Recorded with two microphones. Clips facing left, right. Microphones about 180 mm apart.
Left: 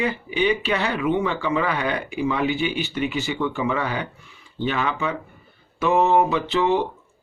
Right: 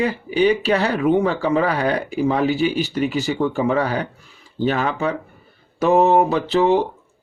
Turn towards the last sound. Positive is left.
turn(degrees=-40)  # may be behind; listen again after turning